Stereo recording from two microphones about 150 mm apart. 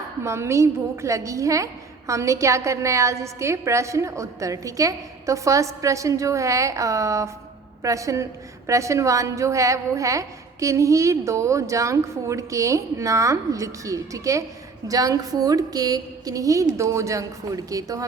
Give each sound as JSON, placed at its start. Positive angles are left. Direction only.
{"t": 0.2, "sound": "a woman's voice", "side_deg": -20}